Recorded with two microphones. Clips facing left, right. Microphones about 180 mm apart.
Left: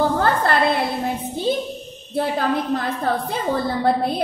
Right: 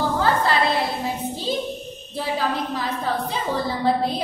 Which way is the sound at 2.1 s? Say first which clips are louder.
Left 4 dB; 55° left (ahead or behind).